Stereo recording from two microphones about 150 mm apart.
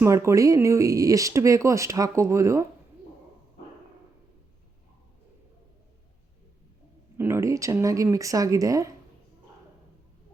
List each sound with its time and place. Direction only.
0.0 s speech: 20° right (ahead or behind)
7.2 s speech: 20° right (ahead or behind)